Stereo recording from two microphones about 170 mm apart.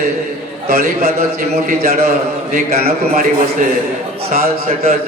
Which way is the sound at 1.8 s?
40° right (ahead or behind).